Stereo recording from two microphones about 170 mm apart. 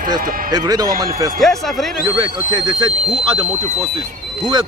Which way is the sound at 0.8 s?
60° right (ahead or behind).